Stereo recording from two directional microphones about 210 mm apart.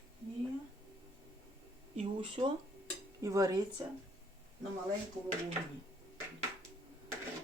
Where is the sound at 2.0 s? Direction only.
25° right (ahead or behind).